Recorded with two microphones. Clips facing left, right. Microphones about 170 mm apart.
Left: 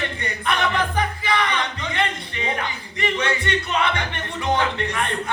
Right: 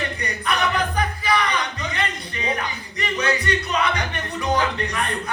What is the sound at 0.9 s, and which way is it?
Music, 25° left (ahead or behind).